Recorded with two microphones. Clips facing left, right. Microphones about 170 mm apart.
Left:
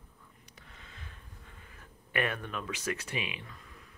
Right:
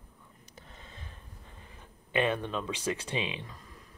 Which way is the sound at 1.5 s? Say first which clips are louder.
Right 2 dB; 25° right (ahead or behind).